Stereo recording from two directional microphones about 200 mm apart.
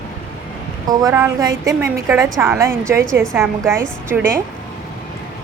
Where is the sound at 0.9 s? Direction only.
15° right (ahead or behind).